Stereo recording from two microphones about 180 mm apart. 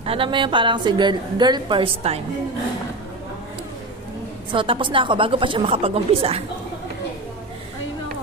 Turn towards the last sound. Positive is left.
turn(degrees=-35)  # may be behind; listen again after turning